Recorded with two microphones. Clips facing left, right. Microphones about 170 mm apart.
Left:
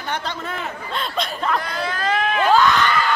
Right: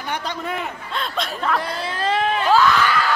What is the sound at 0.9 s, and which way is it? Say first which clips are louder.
Speech: even; centre (ahead or behind).